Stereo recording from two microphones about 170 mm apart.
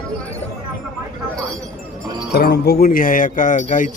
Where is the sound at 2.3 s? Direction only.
70° left (ahead or behind); by 3.9 s 50° left (ahead or behind).